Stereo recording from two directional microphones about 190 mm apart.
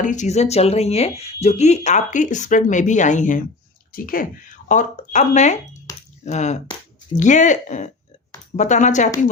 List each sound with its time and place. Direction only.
0.0 s speech: 40° left (ahead or behind)